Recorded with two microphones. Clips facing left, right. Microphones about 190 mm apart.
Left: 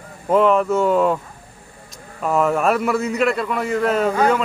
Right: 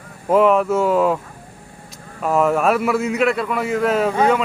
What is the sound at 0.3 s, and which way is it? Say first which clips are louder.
Speech: right 1 dB; 5° right (ahead or behind).